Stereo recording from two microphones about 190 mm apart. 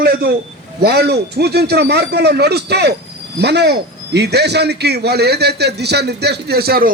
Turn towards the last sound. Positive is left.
turn(degrees=-55)  # may be behind; listen again after turning